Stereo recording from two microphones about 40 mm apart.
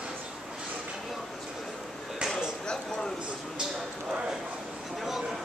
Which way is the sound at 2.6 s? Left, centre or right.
Centre.